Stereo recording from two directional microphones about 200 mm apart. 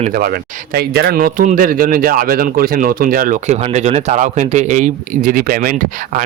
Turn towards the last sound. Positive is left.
turn(degrees=-45)  # may be behind; listen again after turning